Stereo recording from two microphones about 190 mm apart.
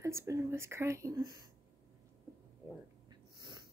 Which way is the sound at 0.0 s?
15° right (ahead or behind).